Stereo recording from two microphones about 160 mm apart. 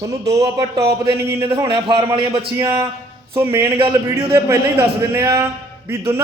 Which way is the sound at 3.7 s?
35° right (ahead or behind).